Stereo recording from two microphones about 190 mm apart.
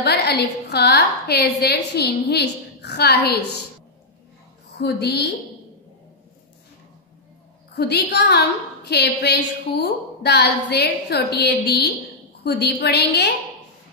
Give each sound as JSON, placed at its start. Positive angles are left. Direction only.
{"t": 0.0, "sound": "a woman's voice", "side_deg": 60}
{"t": 4.7, "sound": "a woman's voice", "side_deg": 60}
{"t": 7.7, "sound": "a woman's voice", "side_deg": 60}